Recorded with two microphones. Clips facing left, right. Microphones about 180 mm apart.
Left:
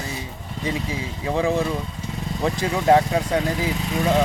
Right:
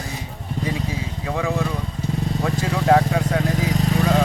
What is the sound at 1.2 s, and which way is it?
Speech, 20° left (ahead or behind).